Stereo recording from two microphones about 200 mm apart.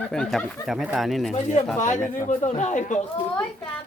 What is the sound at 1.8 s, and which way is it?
Speech, 40° left (ahead or behind).